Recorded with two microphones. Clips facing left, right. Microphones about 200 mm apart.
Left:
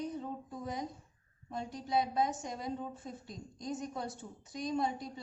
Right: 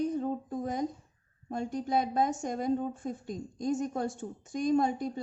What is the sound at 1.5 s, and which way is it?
A woman's voice, 50° right (ahead or behind).